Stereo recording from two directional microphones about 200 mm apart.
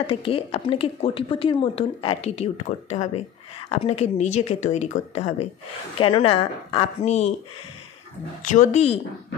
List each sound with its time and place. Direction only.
0.0 s a woman's voice: 25° left (ahead or behind)
8.4 s speech: 40° left (ahead or behind)